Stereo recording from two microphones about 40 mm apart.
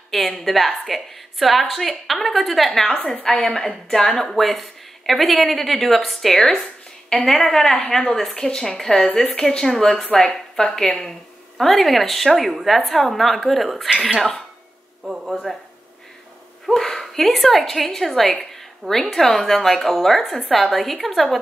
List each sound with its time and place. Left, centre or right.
0.1 s a woman's voice: centre
4.3 s a woman's voice: centre
6.3 s a woman's voice: centre
15.0 s speech: centre
16.7 s a woman's voice: centre